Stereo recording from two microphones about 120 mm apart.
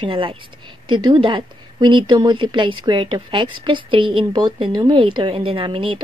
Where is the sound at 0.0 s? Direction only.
45° right (ahead or behind).